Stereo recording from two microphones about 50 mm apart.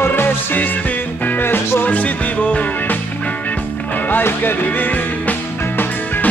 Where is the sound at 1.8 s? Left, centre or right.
Left.